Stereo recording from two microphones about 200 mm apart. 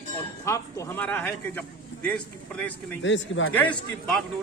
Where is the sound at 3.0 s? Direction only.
70° left (ahead or behind).